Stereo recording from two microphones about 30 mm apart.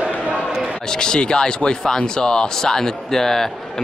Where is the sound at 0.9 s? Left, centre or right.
Left.